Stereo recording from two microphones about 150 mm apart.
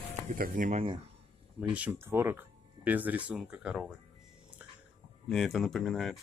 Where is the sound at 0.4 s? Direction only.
60° right (ahead or behind).